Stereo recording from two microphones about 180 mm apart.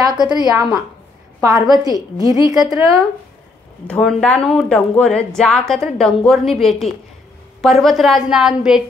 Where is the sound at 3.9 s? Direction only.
5° left (ahead or behind).